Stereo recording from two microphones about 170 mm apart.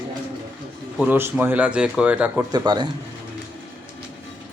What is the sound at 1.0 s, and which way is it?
Speech, 10° right (ahead or behind).